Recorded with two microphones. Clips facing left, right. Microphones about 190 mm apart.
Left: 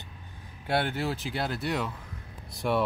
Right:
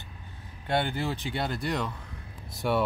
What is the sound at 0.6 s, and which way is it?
Speech, 5° left (ahead or behind).